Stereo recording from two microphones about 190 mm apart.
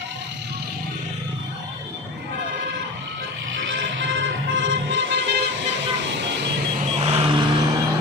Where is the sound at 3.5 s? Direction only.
80° right.